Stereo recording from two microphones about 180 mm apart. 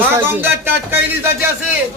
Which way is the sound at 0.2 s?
10° right (ahead or behind).